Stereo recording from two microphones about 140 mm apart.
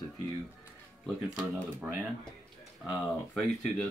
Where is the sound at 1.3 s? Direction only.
10° right (ahead or behind).